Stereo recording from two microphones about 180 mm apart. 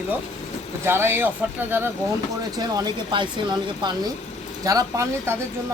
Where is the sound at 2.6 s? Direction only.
20° right (ahead or behind).